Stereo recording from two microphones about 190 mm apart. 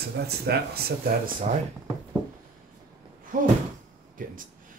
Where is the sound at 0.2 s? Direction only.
55° right (ahead or behind).